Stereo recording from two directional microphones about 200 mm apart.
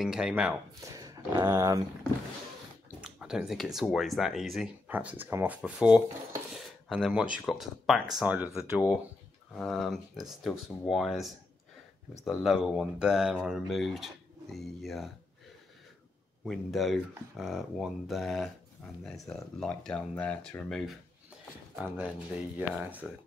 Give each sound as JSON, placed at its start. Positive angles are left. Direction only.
{"t": 0.0, "sound": "speech", "side_deg": -5}
{"t": 0.7, "sound": "speech", "side_deg": -15}
{"t": 3.0, "sound": "speech", "side_deg": -5}
{"t": 12.4, "sound": "speech", "side_deg": -5}
{"t": 16.4, "sound": "speech", "side_deg": 0}